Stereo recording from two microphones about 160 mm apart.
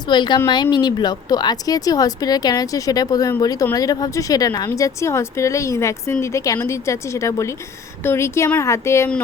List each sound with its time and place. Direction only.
0.1 s speech: 30° left (ahead or behind)